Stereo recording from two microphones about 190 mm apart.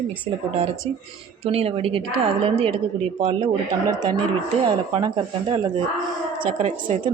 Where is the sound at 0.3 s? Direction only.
35° right (ahead or behind).